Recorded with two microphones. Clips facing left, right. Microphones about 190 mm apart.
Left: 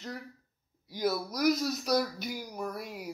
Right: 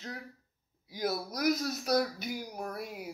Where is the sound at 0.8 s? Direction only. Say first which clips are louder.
Left 3 dB; 50° right (ahead or behind).